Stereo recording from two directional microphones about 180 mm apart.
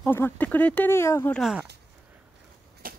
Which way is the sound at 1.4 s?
5° right (ahead or behind).